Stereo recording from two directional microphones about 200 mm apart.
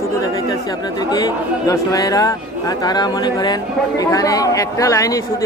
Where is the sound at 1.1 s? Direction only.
20° left (ahead or behind).